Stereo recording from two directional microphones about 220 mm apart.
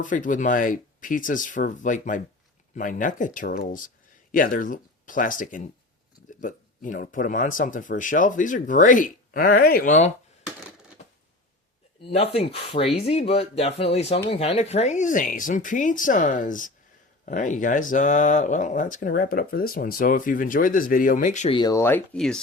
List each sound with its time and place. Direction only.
0.0 s speech: 35° left (ahead or behind)
12.0 s speech: 30° left (ahead or behind)
21.6 s speech: 15° left (ahead or behind)